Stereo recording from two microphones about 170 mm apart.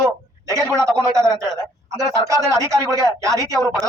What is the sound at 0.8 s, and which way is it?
Speech, 20° right (ahead or behind).